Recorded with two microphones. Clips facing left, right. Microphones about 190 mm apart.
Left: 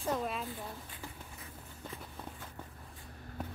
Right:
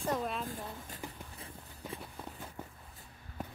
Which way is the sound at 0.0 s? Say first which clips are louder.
Even; centre (ahead or behind).